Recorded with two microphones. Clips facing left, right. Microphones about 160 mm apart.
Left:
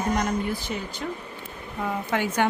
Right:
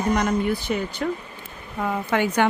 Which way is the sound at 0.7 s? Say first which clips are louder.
Right 6 dB; 75° right (ahead or behind).